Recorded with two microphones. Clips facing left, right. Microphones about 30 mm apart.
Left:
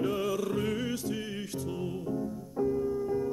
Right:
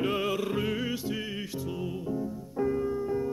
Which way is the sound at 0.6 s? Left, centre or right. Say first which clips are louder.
Right 1 dB; centre.